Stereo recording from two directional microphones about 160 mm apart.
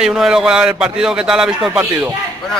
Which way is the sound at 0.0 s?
Centre (ahead or behind).